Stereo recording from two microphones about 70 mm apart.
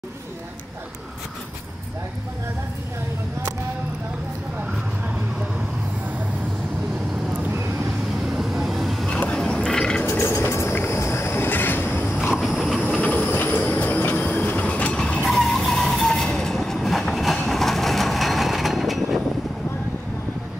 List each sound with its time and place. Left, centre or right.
8.4 s vehicle: centre
9.1 s a sound: centre
10.0 s train: left
12.2 s a sound: centre
12.8 s train: left
15.2 s vehicle: centre